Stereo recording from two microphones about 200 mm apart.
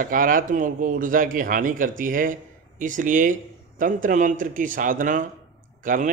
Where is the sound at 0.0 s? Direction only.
45° right (ahead or behind).